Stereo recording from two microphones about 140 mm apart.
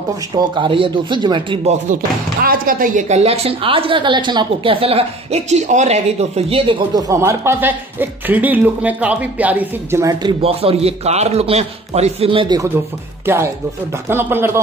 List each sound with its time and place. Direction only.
0.3 s speech: 35° right (ahead or behind)
2.4 s a woman's voice: 90° right; by 6.8 s 40° right (ahead or behind)
7.0 s speech: 20° right (ahead or behind)
10.2 s a woman's voice: 45° right (ahead or behind)
13.2 s speech: 15° right (ahead or behind)